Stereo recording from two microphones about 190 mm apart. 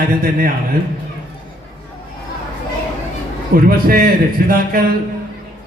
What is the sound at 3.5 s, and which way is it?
A man's voice, 50° right (ahead or behind).